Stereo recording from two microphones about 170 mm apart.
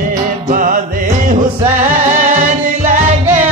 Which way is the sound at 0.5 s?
50° right (ahead or behind).